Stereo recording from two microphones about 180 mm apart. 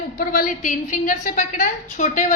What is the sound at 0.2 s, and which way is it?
A woman's voice, 50° left (ahead or behind).